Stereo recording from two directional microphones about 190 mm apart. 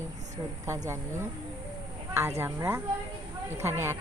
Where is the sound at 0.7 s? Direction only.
15° right (ahead or behind).